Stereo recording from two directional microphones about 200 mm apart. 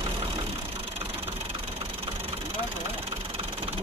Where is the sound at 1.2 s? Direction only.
30° right (ahead or behind).